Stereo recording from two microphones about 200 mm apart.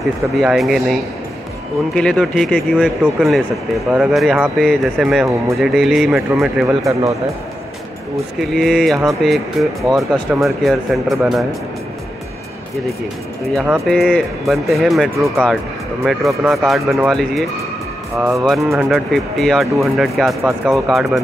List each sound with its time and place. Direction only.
0.4 s speech: centre (ahead or behind)
2.0 s speech: 5° left (ahead or behind)
6.9 s speech: 15° right (ahead or behind)
8.4 s speech: centre (ahead or behind)
13.8 s speech: 5° left (ahead or behind)